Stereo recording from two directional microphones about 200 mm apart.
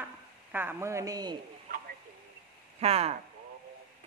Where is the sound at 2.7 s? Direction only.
30° right (ahead or behind).